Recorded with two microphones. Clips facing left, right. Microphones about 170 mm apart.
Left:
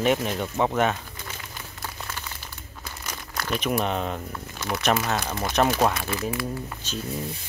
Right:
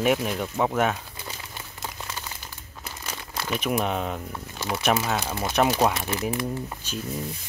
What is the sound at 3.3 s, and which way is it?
Crumpling, 5° right (ahead or behind).